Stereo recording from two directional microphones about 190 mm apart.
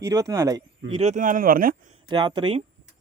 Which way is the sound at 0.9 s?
35° right (ahead or behind).